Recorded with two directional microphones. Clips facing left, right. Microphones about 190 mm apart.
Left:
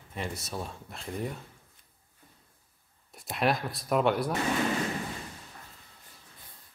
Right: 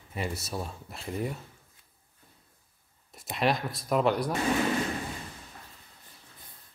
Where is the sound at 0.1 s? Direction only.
5° right (ahead or behind).